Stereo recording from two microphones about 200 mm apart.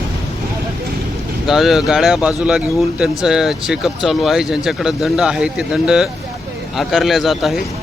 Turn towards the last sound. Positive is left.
turn(degrees=0)  # may be behind; listen again after turning